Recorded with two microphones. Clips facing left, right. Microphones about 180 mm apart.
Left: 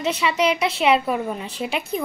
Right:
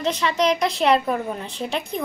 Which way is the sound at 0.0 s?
10° left (ahead or behind).